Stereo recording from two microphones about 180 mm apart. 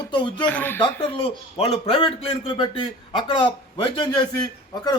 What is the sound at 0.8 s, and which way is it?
A man's voice, 30° left (ahead or behind).